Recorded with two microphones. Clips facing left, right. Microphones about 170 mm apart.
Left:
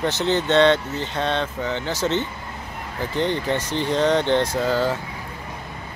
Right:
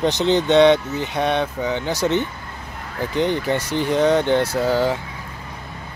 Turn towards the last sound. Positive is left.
turn(degrees=-15)  # may be behind; listen again after turning